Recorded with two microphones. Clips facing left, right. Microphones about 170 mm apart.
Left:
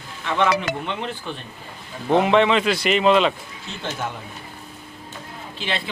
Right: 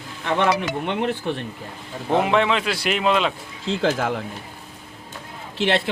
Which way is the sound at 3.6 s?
90° right.